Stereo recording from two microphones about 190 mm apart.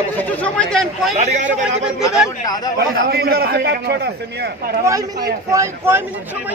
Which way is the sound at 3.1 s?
55° right (ahead or behind).